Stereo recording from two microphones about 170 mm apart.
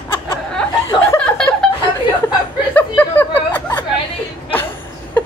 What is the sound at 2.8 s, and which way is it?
Chuckle, 10° left (ahead or behind).